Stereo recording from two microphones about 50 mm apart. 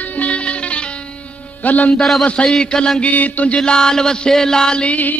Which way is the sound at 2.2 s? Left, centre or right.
Left.